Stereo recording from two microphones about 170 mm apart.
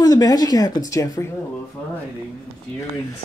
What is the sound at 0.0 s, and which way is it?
A man's voice, 20° left (ahead or behind).